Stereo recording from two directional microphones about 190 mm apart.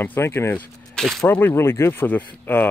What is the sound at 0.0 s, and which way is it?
Speech, 10° left (ahead or behind).